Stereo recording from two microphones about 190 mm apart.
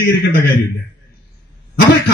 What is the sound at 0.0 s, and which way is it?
Speech, 65° left (ahead or behind).